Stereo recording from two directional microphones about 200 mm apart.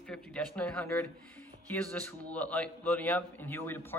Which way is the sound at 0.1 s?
5° left (ahead or behind).